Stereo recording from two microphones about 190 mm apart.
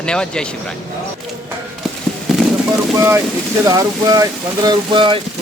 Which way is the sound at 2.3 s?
Centre (ahead or behind).